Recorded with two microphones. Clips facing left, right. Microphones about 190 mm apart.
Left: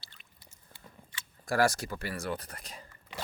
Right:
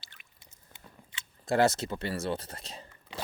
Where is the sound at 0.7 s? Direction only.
25° right (ahead or behind).